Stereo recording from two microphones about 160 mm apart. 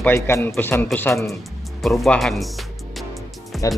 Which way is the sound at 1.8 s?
Centre (ahead or behind).